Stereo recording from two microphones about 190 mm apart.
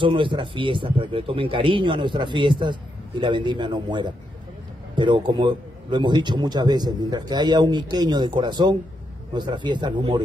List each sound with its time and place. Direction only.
0.0 s speech: 25° right (ahead or behind)